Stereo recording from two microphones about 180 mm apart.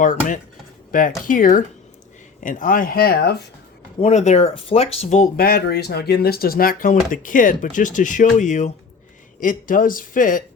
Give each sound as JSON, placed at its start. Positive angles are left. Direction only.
{"t": 0.9, "sound": "speech", "side_deg": 50}
{"t": 4.0, "sound": "speech", "side_deg": 40}
{"t": 5.5, "sound": "speech", "side_deg": 65}